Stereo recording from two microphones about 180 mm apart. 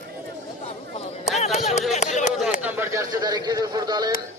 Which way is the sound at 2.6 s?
10° right (ahead or behind).